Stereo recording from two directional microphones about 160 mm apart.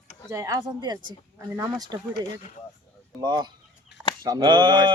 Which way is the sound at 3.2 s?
25° right (ahead or behind).